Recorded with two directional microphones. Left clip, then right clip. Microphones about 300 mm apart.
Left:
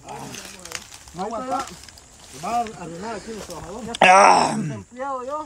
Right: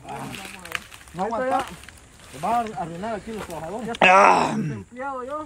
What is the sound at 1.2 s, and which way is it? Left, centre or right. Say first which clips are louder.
Speech: right 3 dB; centre.